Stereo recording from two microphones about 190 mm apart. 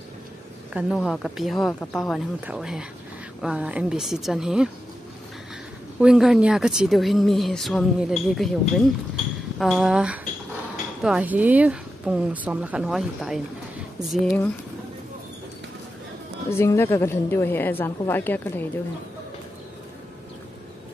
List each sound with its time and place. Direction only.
0.9 s speech: 5° left (ahead or behind)
5.9 s speech: 5° right (ahead or behind)
16.4 s a woman's voice: 15° left (ahead or behind)